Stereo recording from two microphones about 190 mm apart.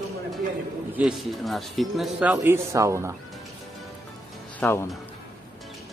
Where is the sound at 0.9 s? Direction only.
Centre (ahead or behind).